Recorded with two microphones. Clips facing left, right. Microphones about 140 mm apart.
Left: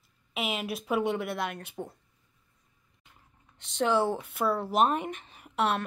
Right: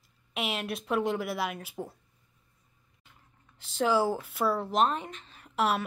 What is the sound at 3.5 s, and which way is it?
A woman's voice, centre (ahead or behind).